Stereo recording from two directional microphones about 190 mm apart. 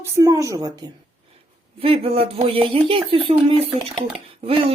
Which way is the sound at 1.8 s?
30° right (ahead or behind).